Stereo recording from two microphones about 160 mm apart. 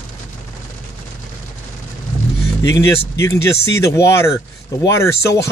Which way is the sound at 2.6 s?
20° left (ahead or behind).